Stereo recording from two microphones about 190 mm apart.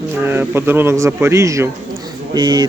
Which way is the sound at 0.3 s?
10° right (ahead or behind).